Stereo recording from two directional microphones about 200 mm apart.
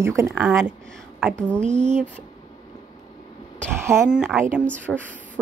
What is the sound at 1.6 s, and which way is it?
Speech, 35° right (ahead or behind).